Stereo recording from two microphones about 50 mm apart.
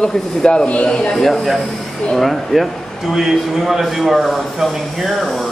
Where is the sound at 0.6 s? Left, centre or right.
Left.